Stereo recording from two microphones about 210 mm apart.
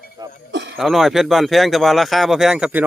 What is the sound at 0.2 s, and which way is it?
Speech, 20° right (ahead or behind).